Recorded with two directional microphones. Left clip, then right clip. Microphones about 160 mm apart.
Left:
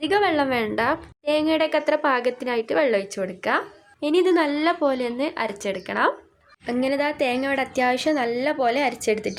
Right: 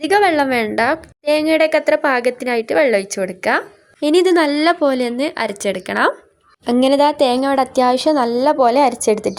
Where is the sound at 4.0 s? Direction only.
40° right (ahead or behind).